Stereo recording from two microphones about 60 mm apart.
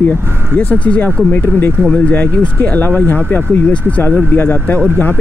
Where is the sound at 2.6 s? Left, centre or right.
Left.